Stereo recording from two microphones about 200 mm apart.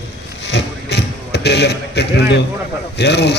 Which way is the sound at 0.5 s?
55° left (ahead or behind).